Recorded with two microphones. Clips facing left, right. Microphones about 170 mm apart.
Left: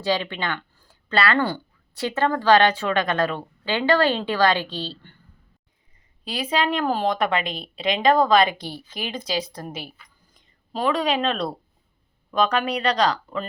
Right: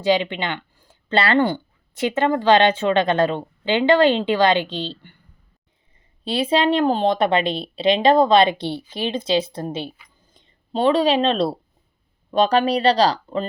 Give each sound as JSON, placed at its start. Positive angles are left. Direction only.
{"t": 0.0, "sound": "speech", "side_deg": -20}
{"t": 6.2, "sound": "speech", "side_deg": -30}